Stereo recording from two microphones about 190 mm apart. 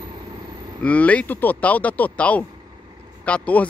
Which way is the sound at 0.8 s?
5° left (ahead or behind).